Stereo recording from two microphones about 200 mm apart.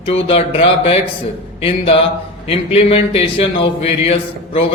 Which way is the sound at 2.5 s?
30° left (ahead or behind).